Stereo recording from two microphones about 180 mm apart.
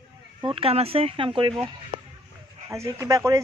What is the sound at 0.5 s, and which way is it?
Speech, 30° right (ahead or behind).